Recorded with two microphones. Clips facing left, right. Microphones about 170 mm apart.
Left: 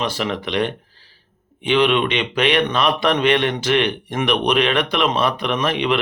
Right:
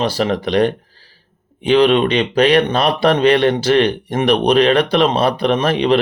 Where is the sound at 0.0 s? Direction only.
35° right (ahead or behind).